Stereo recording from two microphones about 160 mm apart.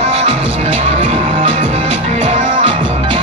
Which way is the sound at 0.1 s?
40° right (ahead or behind).